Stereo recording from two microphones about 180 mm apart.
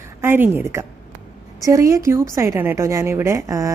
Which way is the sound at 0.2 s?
10° right (ahead or behind).